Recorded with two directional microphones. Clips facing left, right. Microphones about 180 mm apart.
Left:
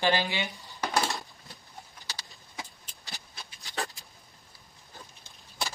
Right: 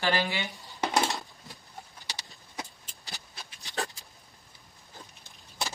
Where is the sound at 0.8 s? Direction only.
20° right (ahead or behind).